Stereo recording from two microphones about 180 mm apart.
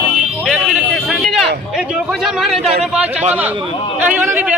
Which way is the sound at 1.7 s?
5° right (ahead or behind).